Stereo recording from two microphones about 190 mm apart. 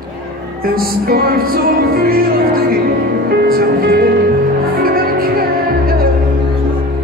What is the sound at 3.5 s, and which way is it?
Speech, 50° right (ahead or behind).